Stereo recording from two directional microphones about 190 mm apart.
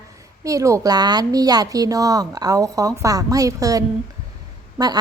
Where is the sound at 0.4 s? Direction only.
15° right (ahead or behind).